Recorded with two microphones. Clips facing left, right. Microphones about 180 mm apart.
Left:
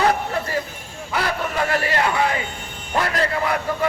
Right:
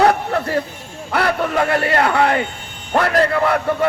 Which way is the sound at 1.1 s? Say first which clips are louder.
Right 6 dB; 60° right (ahead or behind).